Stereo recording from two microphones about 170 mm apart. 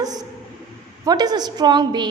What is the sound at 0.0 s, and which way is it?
A woman's voice, 20° right (ahead or behind).